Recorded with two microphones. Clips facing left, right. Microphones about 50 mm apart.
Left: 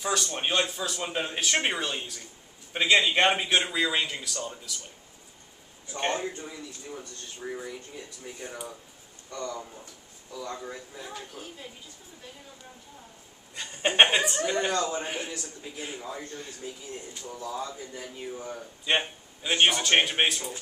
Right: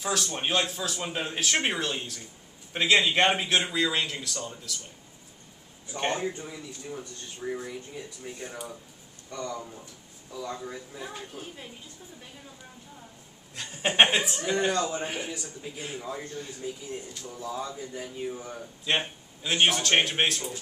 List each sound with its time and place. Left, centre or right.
0.0 s a man's voice: centre
5.9 s a man's voice: centre
9.3 s a man's voice: centre
13.6 s a man's voice: centre
17.1 s speech: centre
17.4 s a man's voice: centre